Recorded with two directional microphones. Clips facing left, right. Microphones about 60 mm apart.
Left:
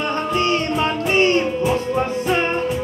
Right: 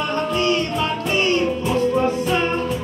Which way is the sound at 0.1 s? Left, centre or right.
Left.